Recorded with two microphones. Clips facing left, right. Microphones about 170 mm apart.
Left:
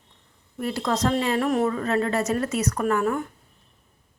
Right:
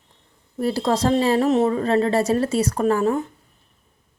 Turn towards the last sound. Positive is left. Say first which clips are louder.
# right 4 dB
turn(degrees=-25)  # may be behind; listen again after turning